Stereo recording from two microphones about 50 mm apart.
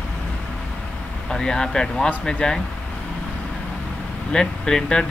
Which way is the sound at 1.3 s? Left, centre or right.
Centre.